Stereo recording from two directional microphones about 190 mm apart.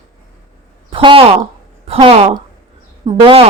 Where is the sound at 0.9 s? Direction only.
30° right (ahead or behind).